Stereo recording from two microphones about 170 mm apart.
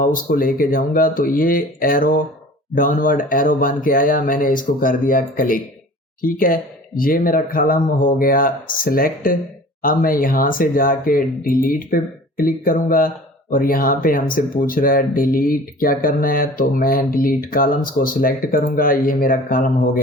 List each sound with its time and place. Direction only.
0.0 s speech: 55° left (ahead or behind)